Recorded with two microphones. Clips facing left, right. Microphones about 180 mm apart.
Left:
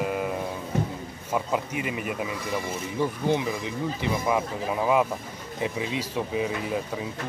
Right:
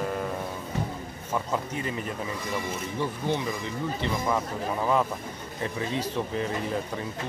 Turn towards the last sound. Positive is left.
turn(degrees=5)  # may be behind; listen again after turning